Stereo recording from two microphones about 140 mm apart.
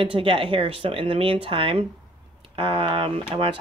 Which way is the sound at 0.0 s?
40° right (ahead or behind).